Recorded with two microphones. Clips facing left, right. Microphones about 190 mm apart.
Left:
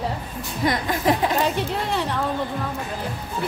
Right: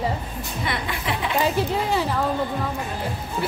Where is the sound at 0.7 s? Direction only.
40° left (ahead or behind).